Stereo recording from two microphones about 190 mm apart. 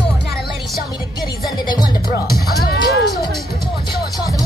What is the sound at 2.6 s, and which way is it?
Music, 60° left (ahead or behind).